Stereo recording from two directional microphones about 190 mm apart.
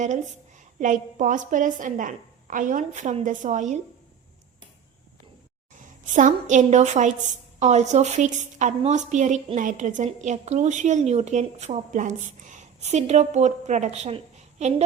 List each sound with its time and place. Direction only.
0.0 s a woman's voice: 40° right (ahead or behind)
5.7 s a woman's voice: 40° right (ahead or behind)